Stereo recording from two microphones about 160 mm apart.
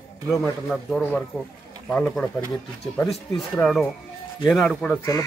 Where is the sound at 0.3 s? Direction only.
Centre (ahead or behind).